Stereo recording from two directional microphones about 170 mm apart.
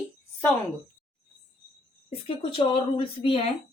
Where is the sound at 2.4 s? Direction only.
30° left (ahead or behind).